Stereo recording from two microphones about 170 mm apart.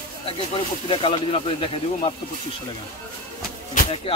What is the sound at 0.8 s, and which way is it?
Speech, 30° left (ahead or behind).